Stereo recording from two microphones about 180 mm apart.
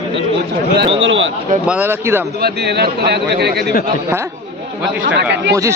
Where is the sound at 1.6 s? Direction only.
10° right (ahead or behind).